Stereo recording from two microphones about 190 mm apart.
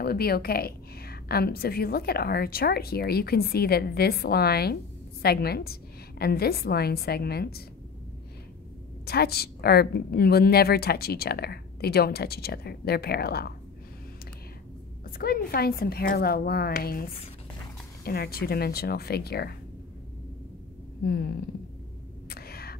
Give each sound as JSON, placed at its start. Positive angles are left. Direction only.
{"t": 0.0, "sound": "a woman's voice", "side_deg": 55}
{"t": 9.0, "sound": "a woman's voice", "side_deg": 55}
{"t": 15.0, "sound": "a woman's voice", "side_deg": 50}
{"t": 18.0, "sound": "a woman's voice", "side_deg": 55}
{"t": 21.0, "sound": "a sound", "side_deg": 55}
{"t": 22.3, "sound": "a sound", "side_deg": 55}